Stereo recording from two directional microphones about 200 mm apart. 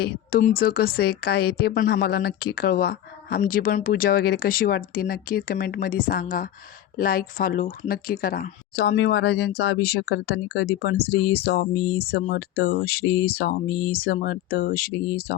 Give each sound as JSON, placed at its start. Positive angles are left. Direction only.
{"t": 0.0, "sound": "speech", "side_deg": 50}